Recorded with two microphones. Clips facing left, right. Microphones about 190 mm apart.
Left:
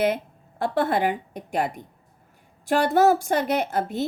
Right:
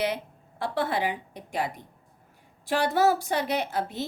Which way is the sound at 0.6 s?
50° left (ahead or behind).